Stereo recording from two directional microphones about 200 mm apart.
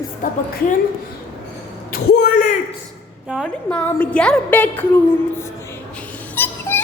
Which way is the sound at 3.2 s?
Centre (ahead or behind).